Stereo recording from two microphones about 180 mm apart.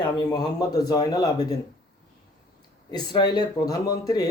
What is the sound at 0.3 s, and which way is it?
Speech, 20° left (ahead or behind).